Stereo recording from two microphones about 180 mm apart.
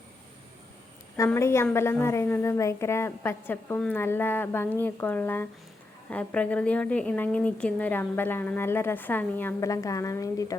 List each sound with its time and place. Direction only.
1.1 s a woman's voice: 15° left (ahead or behind)